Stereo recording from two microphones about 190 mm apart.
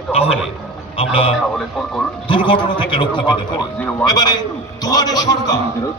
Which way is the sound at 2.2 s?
25° left (ahead or behind).